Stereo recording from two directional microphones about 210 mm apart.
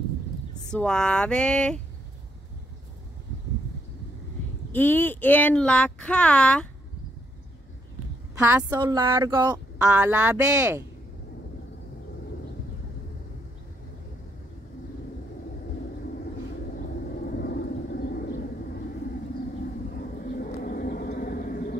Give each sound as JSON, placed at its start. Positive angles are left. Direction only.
{"t": 0.7, "sound": "speech", "side_deg": 5}
{"t": 4.7, "sound": "speech", "side_deg": 10}
{"t": 8.4, "sound": "a woman's voice", "side_deg": -10}
{"t": 9.8, "sound": "speech", "side_deg": -5}
{"t": 17.4, "sound": "vehicle", "side_deg": 50}
{"t": 20.0, "sound": "bird", "side_deg": 45}